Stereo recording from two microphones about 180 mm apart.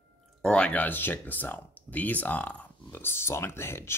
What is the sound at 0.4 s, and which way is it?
Speech, 5° left (ahead or behind).